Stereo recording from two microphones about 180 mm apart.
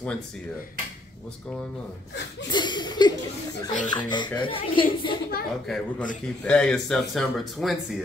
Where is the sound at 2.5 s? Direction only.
25° left (ahead or behind).